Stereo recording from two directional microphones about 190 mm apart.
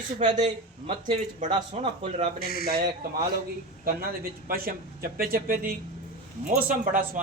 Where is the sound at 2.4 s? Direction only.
55° left (ahead or behind).